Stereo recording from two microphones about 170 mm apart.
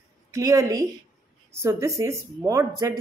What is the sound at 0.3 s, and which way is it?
Speech, 20° right (ahead or behind).